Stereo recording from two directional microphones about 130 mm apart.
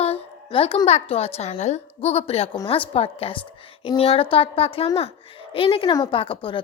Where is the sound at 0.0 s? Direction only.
50° left (ahead or behind).